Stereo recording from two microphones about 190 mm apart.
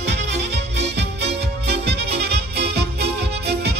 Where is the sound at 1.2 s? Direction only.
65° right (ahead or behind).